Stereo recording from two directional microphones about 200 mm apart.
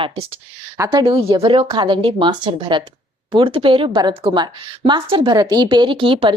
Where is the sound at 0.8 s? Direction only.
20° right (ahead or behind).